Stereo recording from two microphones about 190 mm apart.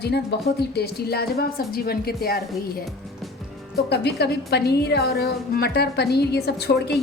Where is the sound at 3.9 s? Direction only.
60° left (ahead or behind).